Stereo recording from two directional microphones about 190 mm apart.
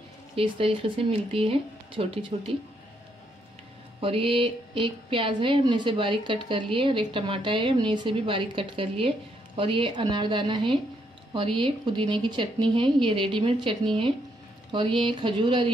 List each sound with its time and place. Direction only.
0.4 s a woman's voice: 30° right (ahead or behind)
4.0 s a woman's voice: 30° right (ahead or behind)